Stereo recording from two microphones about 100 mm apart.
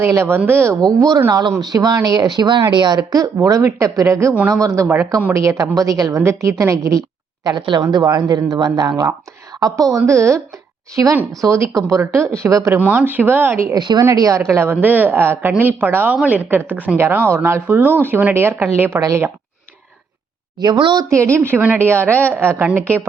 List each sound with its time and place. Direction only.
0.0 s a woman's voice: 25° right (ahead or behind)
0.9 s a woman's voice: 35° right (ahead or behind)
3.4 s a woman's voice: 35° right (ahead or behind)
7.6 s a woman's voice: 45° right (ahead or behind)
12.7 s a woman's voice: 15° right (ahead or behind)
13.7 s speech: 45° right (ahead or behind)
14.0 s a woman's voice: 30° right (ahead or behind)
20.6 s speech: 50° right (ahead or behind)
21.3 s a woman's voice: 20° right (ahead or behind)